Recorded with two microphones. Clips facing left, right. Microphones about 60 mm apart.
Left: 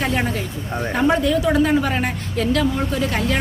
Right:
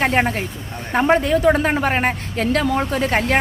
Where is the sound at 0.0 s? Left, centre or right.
Right.